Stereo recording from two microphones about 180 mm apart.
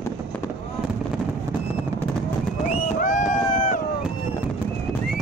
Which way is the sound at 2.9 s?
50° left (ahead or behind).